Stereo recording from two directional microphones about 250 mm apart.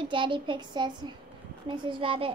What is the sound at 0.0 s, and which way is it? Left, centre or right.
A child's voice, centre.